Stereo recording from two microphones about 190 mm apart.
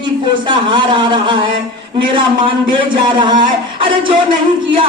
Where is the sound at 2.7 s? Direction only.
25° right (ahead or behind).